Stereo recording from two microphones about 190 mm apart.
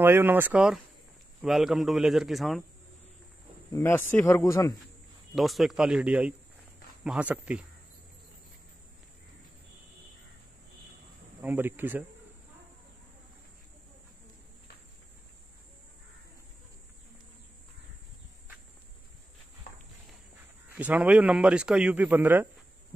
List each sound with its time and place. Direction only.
0.0 s a man's voice: 10° right (ahead or behind)
3.7 s speech: 10° left (ahead or behind)
5.3 s a man's voice: centre (ahead or behind)
11.4 s a man's voice: 10° right (ahead or behind)
20.7 s a man's voice: 5° right (ahead or behind)